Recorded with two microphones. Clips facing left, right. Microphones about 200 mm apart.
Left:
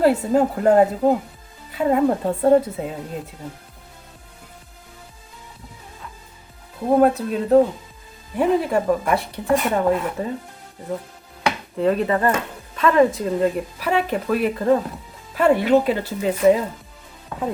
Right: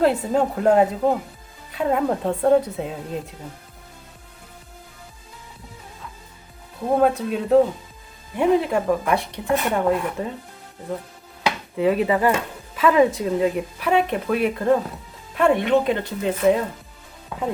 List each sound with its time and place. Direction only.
0.0 s speech: 5° left (ahead or behind)
6.9 s speech: 5° left (ahead or behind)
11.8 s speech: 5° right (ahead or behind)